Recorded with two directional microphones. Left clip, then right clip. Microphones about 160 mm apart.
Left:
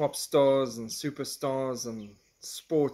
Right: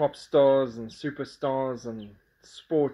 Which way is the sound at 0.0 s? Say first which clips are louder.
Right 3 dB; 40° left (ahead or behind).